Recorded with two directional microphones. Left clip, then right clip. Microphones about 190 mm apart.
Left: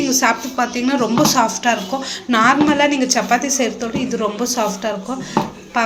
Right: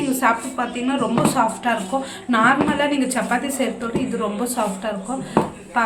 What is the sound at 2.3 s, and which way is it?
A woman's voice, 10° left (ahead or behind).